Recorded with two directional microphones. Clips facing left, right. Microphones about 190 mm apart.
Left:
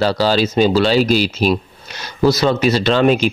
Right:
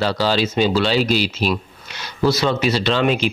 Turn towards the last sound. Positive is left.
turn(degrees=45)  # may be behind; listen again after turning